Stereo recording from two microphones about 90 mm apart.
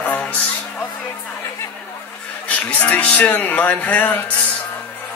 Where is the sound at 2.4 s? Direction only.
15° left (ahead or behind).